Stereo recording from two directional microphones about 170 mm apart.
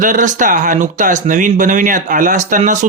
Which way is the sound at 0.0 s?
50° right (ahead or behind).